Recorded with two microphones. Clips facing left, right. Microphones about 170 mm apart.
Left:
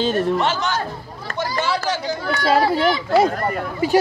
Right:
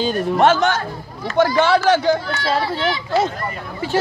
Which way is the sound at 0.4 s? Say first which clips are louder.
Right 6 dB; 50° right (ahead or behind).